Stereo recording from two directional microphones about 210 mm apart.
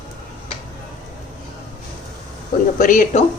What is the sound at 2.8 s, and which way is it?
Speech, 40° left (ahead or behind).